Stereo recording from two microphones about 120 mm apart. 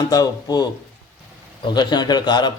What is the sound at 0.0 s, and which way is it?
A man's voice, 30° left (ahead or behind).